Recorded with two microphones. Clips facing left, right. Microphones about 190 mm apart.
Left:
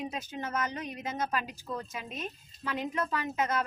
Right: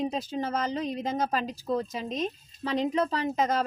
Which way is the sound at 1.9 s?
35° right (ahead or behind).